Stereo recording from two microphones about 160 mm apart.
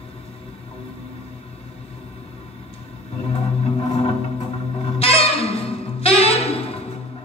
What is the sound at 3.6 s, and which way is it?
Music, 35° left (ahead or behind).